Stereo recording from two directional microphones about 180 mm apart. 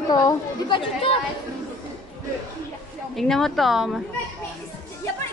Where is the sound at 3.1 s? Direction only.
Centre (ahead or behind).